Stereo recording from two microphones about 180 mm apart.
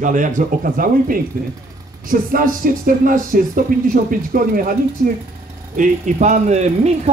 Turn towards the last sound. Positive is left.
turn(degrees=-40)  # may be behind; listen again after turning